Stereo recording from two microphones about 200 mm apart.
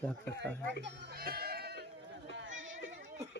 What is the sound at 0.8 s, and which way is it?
Sheep, 50° right (ahead or behind).